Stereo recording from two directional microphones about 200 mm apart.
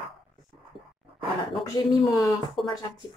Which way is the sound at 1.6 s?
20° left (ahead or behind).